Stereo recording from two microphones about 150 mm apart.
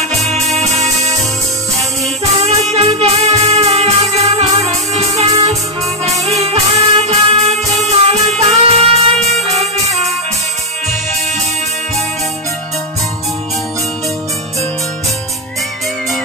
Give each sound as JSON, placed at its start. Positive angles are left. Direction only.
{"t": 2.7, "sound": "music", "side_deg": -45}